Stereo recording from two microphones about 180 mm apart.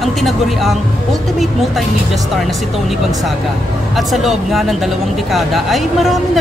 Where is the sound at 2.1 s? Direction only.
Centre (ahead or behind).